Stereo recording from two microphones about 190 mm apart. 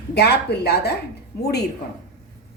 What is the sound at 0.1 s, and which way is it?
Speech, 60° left (ahead or behind).